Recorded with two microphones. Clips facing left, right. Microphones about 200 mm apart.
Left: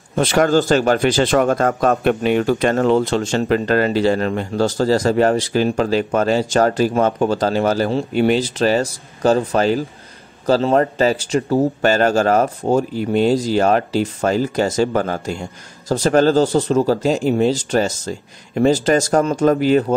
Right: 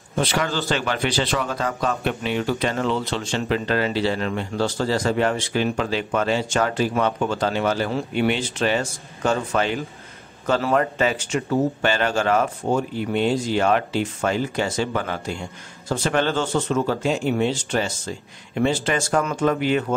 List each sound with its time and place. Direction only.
0.1 s speech: 50° left (ahead or behind)